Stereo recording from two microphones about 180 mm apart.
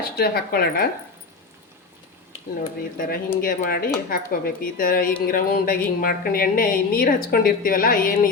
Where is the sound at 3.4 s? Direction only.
50° left (ahead or behind).